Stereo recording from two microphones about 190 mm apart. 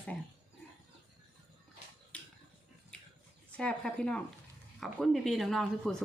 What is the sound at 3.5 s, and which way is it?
Speech, 5° left (ahead or behind).